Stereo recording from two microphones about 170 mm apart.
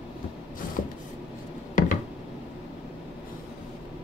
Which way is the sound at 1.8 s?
50° left (ahead or behind).